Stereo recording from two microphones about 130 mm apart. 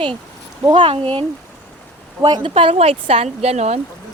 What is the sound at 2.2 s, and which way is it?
Speech, 30° right (ahead or behind).